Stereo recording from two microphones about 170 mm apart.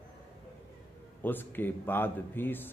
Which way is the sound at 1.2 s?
10° left (ahead or behind).